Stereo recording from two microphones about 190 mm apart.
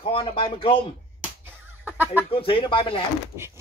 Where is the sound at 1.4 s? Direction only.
10° right (ahead or behind).